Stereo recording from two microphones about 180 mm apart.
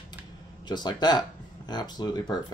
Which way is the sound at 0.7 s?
25° left (ahead or behind).